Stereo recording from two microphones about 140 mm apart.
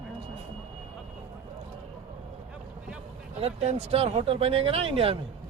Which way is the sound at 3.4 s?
50° right (ahead or behind).